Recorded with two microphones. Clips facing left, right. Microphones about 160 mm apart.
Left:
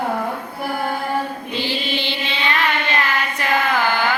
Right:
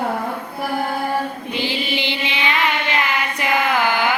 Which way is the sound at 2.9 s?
15° right (ahead or behind).